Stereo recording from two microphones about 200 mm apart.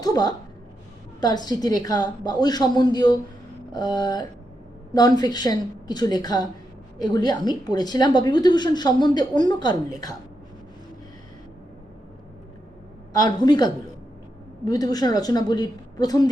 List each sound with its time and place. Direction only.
0.0 s a sound: 20° left (ahead or behind)
1.2 s a woman's voice: 20° left (ahead or behind)
13.2 s a woman's voice: 20° left (ahead or behind)